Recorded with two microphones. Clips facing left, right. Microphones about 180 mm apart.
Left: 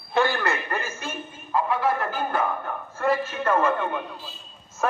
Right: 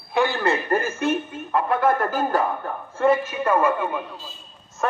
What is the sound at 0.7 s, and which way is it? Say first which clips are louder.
Speech: right 9 dB; 50° right (ahead or behind).